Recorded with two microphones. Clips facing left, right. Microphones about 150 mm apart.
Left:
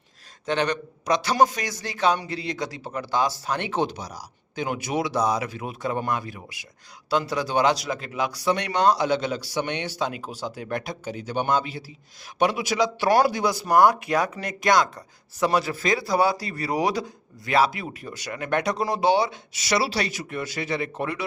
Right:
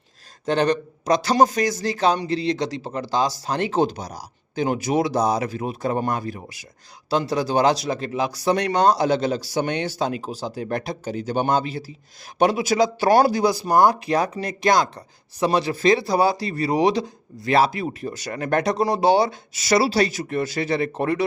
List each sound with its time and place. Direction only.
0.4 s speech: 35° right (ahead or behind)